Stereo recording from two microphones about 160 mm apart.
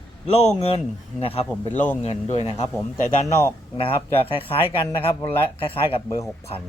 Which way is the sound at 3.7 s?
35° left (ahead or behind).